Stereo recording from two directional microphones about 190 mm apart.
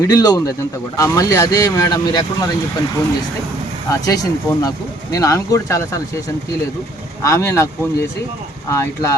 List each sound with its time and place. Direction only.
0.0 s speech: 20° left (ahead or behind)
3.8 s speech: 20° left (ahead or behind)
8.7 s speech: 15° left (ahead or behind)